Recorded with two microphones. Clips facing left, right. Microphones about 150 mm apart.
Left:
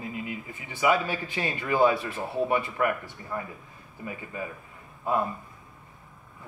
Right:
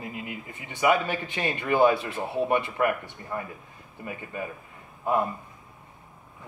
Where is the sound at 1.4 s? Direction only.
20° right (ahead or behind).